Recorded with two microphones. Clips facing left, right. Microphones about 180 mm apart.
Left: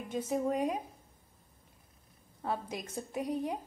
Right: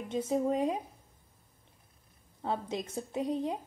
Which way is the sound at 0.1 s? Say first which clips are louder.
Right 3 dB; 25° right (ahead or behind).